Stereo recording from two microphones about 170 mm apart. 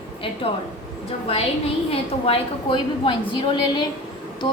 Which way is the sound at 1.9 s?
35° left (ahead or behind).